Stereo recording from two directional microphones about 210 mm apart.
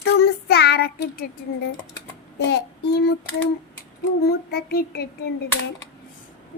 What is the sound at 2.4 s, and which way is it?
Speech, 50° left (ahead or behind).